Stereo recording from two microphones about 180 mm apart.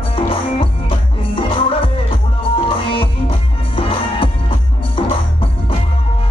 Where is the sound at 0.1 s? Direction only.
30° left (ahead or behind).